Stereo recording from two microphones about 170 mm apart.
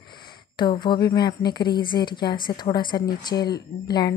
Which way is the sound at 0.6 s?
25° left (ahead or behind).